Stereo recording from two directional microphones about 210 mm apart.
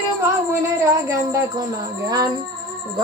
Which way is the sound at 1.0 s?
15° right (ahead or behind).